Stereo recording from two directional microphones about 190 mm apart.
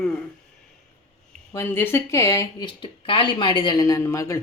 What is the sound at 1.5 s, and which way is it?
Speech, 15° left (ahead or behind).